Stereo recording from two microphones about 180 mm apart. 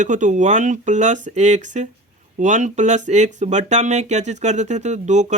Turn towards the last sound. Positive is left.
turn(degrees=-40)  # may be behind; listen again after turning